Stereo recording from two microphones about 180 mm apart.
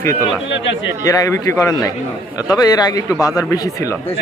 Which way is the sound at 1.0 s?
20° left (ahead or behind).